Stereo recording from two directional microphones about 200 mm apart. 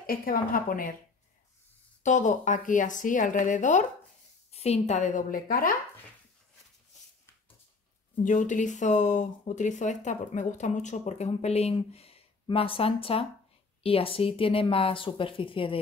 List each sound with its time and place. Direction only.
0.0 s a woman's voice: 45° left (ahead or behind)
2.0 s speech: 40° left (ahead or behind)
8.2 s a woman's voice: 40° left (ahead or behind)